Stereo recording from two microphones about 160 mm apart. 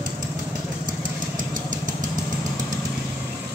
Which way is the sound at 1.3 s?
55° right (ahead or behind).